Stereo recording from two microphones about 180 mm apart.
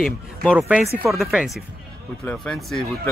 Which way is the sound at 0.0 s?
Centre (ahead or behind).